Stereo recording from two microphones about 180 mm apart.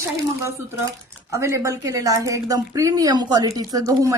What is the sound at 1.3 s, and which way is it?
A woman's voice, 15° right (ahead or behind).